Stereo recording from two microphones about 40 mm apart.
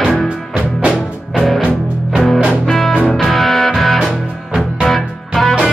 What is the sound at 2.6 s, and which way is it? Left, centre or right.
Music, centre.